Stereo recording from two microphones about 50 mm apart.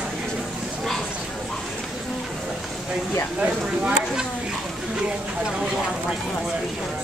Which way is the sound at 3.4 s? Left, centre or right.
Right.